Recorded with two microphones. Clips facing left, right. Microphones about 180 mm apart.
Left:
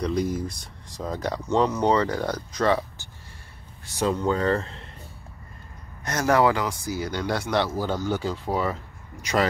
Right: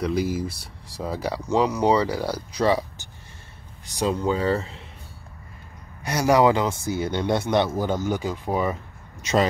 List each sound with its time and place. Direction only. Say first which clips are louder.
0.0 s speech: right 1 dB; 5° right (ahead or behind)
6.0 s speech: right 2 dB; 10° right (ahead or behind)